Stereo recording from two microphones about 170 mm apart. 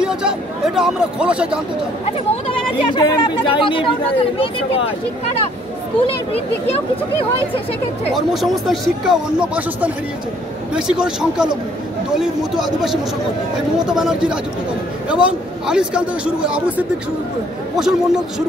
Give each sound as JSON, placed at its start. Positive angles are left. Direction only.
{"t": 0.0, "sound": "speech", "side_deg": -5}
{"t": 2.4, "sound": "speech", "side_deg": 30}
{"t": 8.1, "sound": "speech", "side_deg": 0}